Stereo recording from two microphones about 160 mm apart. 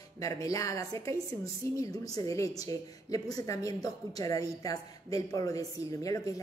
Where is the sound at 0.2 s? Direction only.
20° left (ahead or behind).